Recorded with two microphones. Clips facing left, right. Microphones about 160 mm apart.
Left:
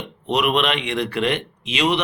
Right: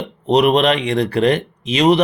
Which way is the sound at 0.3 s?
35° right (ahead or behind).